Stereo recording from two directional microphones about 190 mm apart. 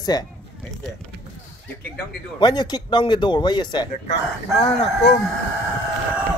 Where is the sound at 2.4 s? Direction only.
20° left (ahead or behind).